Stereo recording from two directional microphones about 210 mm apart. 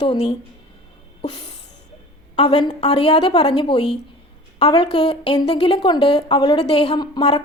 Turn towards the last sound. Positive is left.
turn(degrees=20)  # may be behind; listen again after turning